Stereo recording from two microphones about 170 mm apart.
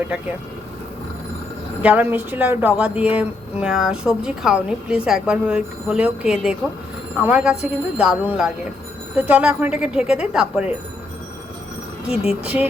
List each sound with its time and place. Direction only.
1.8 s speech: 10° right (ahead or behind)
12.0 s speech: 35° left (ahead or behind)
12.3 s speech: 5° right (ahead or behind)